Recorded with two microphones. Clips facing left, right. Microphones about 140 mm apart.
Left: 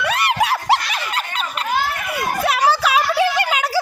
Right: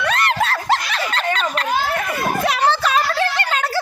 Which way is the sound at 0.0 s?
10° left (ahead or behind).